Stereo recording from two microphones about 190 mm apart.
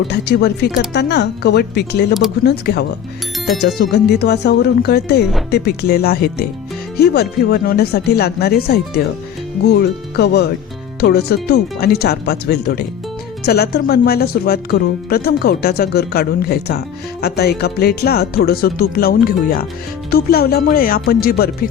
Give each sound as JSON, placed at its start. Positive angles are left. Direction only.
{"t": 0.1, "sound": "speech", "side_deg": 65}